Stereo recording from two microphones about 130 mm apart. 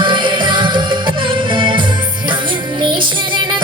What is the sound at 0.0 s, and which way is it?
Music, 40° right (ahead or behind).